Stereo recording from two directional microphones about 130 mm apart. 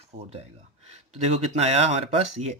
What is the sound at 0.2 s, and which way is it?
Speech, 55° right (ahead or behind).